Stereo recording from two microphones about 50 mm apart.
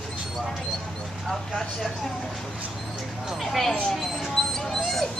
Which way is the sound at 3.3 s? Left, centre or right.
Centre.